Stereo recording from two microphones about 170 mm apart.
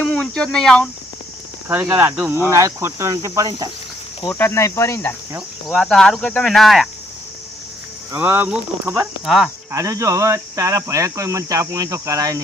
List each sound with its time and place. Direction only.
0.0 s speech: 5° left (ahead or behind)
1.6 s speech: 15° right (ahead or behind)
4.3 s speech: 15° left (ahead or behind)
5.6 s cricket: centre (ahead or behind)
8.1 s speech: 10° right (ahead or behind)
9.2 s cricket: centre (ahead or behind)
9.7 s speech: 20° right (ahead or behind)